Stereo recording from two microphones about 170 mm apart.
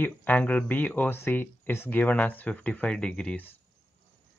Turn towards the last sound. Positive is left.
turn(degrees=10)  # may be behind; listen again after turning